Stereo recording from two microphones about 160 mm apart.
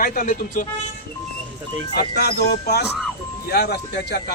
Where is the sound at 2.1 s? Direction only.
85° left.